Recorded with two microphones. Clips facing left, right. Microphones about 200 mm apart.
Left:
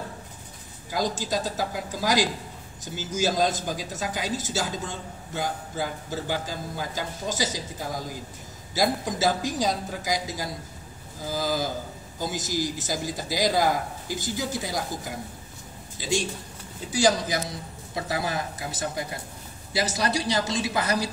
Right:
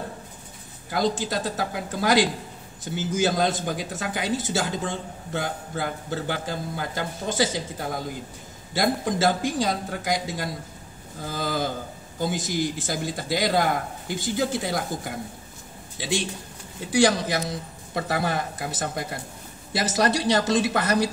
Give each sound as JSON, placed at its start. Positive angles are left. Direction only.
{"t": 1.2, "sound": "speech", "side_deg": -60}
{"t": 9.2, "sound": "speech", "side_deg": -55}
{"t": 11.2, "sound": "a sound", "side_deg": -60}
{"t": 12.2, "sound": "speech", "side_deg": -55}